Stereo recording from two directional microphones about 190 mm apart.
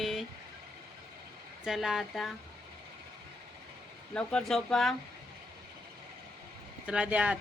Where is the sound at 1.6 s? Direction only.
Centre (ahead or behind).